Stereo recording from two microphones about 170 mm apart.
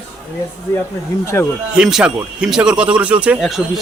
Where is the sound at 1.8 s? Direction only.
5° right (ahead or behind).